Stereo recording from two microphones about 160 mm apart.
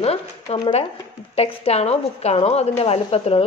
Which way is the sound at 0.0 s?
35° left (ahead or behind).